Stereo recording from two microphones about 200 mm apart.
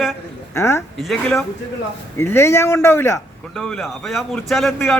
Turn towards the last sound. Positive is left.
turn(degrees=0)  # may be behind; listen again after turning